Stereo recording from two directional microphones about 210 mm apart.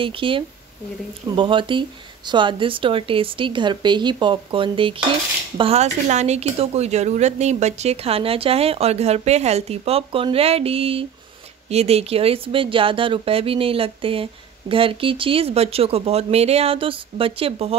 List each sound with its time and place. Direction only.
0.0 s speech: 25° right (ahead or behind)